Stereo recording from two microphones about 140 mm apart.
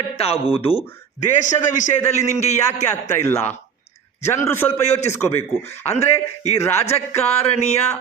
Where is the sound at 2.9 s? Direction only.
20° left (ahead or behind).